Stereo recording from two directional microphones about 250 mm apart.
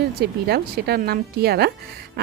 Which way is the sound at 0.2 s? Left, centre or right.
Right.